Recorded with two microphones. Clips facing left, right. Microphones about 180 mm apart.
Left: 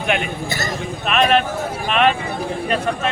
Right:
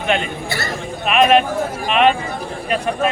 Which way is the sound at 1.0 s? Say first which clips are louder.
Right 3 dB; 5° right (ahead or behind).